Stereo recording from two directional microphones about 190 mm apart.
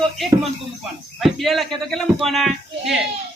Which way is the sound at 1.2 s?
Centre (ahead or behind).